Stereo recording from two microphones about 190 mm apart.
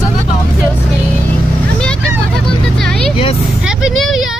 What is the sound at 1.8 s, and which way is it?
Vehicle, 5° left (ahead or behind).